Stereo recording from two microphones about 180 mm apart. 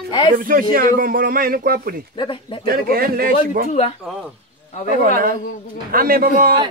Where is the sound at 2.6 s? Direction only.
55° right (ahead or behind).